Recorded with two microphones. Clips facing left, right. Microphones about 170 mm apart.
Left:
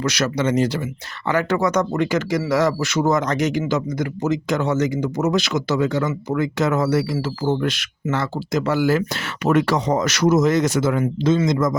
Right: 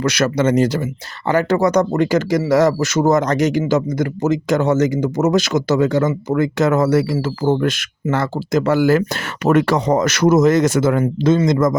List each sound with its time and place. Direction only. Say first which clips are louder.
0.0 s speech: right 4 dB; 55° right (ahead or behind)
1.3 s speech: right 4 dB; 35° right (ahead or behind); by 11.8 s 50° right (ahead or behind)